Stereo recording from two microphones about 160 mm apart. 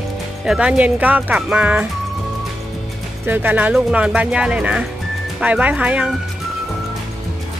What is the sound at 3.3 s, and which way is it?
Speech, 10° right (ahead or behind).